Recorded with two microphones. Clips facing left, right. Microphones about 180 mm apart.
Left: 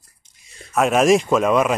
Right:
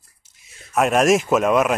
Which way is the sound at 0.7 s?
Centre (ahead or behind).